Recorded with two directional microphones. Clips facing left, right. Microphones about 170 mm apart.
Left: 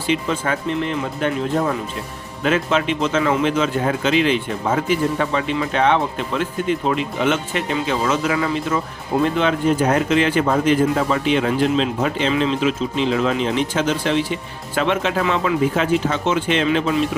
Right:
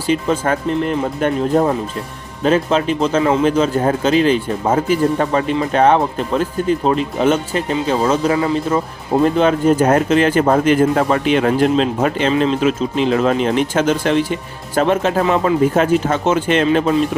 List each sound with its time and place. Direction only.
0.1 s speech: 45° right (ahead or behind)